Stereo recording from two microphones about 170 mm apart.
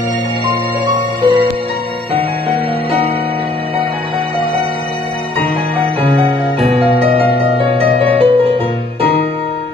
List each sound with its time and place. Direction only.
0.9 s music: 25° right (ahead or behind)
6.0 s music: 35° right (ahead or behind)